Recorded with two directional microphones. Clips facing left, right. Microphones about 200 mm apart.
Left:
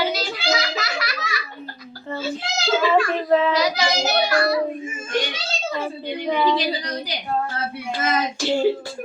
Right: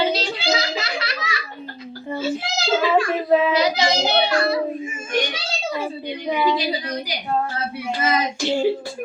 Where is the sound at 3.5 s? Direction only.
25° right (ahead or behind).